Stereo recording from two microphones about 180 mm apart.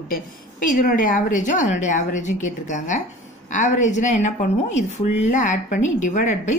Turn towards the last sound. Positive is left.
turn(degrees=45)  # may be behind; listen again after turning